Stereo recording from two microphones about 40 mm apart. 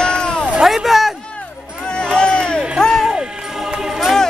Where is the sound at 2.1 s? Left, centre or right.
Left.